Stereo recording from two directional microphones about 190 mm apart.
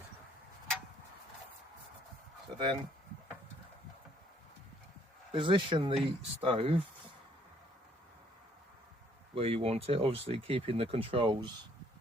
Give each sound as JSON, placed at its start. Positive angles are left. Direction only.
{"t": 2.6, "sound": "speech", "side_deg": -25}
{"t": 5.3, "sound": "speech", "side_deg": -25}
{"t": 9.3, "sound": "speech", "side_deg": -30}